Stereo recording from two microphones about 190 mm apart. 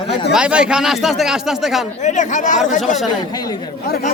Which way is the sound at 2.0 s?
40° left (ahead or behind).